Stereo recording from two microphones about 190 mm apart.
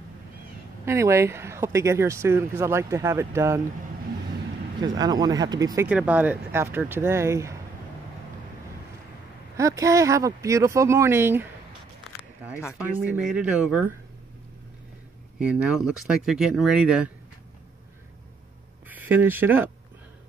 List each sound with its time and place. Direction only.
0.8 s speech: 15° right (ahead or behind)
4.8 s speech: 20° right (ahead or behind)
5.9 s speech: 5° right (ahead or behind)
9.6 s speech: 15° right (ahead or behind)
12.7 s speech: 10° right (ahead or behind)
15.3 s speech: 5° right (ahead or behind)
18.9 s speech: 10° right (ahead or behind)